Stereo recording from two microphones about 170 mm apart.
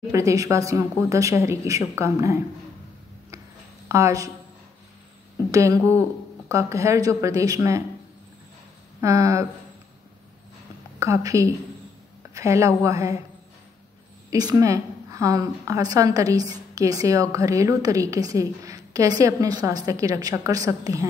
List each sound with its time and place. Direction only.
0.1 s speech: 20° right (ahead or behind)
3.9 s a woman's voice: 20° right (ahead or behind)
5.5 s a woman's voice: 20° right (ahead or behind)
9.0 s a woman's voice: 20° right (ahead or behind)
11.0 s speech: 20° right (ahead or behind)
14.3 s a woman's voice: 20° right (ahead or behind)